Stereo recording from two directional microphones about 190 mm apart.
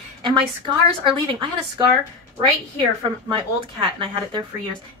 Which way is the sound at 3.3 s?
25° right (ahead or behind).